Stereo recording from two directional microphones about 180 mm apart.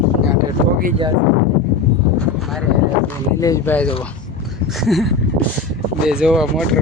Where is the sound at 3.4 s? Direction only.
20° left (ahead or behind).